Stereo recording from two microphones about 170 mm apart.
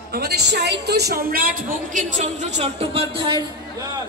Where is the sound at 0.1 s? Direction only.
70° right (ahead or behind).